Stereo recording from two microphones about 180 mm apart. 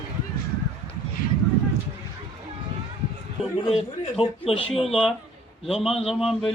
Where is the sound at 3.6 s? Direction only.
30° left (ahead or behind).